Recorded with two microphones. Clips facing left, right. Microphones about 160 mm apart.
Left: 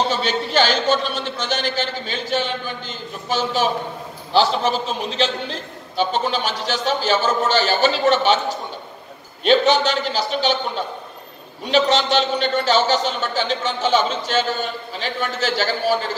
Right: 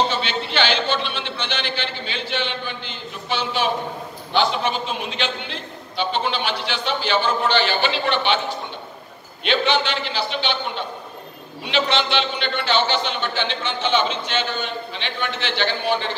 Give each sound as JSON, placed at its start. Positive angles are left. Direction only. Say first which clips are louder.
{"t": 0.1, "sound": "a man's voice", "louder": "left 4 dB", "side_deg": 40}
{"t": 9.4, "sound": "a man's voice", "louder": "left 5 dB", "side_deg": 40}
{"t": 11.6, "sound": "a man's voice", "louder": "left 4 dB", "side_deg": 40}